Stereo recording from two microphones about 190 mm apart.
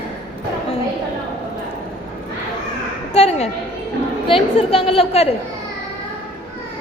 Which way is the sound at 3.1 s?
35° left (ahead or behind).